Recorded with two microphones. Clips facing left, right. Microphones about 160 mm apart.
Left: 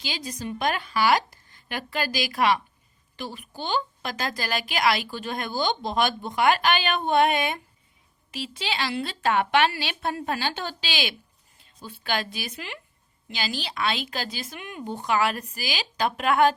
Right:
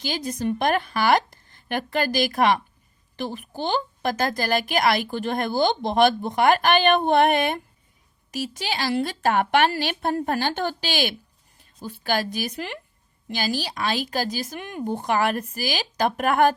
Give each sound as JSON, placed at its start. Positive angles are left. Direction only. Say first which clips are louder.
{"t": 0.0, "sound": "a woman's voice", "louder": "right 7 dB", "side_deg": -50}
{"t": 8.3, "sound": "a woman's voice", "louder": "right 3 dB", "side_deg": -45}